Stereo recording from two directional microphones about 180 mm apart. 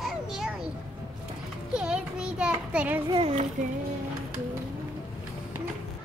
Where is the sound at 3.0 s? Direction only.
30° right (ahead or behind).